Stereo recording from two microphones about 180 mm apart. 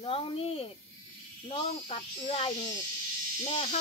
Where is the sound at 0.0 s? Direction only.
30° left (ahead or behind).